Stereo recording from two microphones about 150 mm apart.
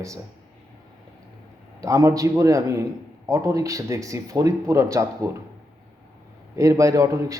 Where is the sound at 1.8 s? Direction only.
20° right (ahead or behind).